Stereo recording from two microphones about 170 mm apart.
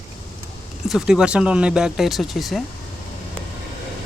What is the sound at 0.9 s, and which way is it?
Speech, 5° right (ahead or behind).